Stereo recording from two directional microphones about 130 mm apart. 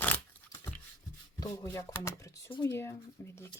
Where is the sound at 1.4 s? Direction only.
25° left (ahead or behind).